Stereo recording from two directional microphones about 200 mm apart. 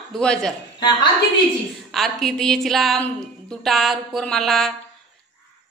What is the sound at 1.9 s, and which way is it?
A woman's voice, centre (ahead or behind).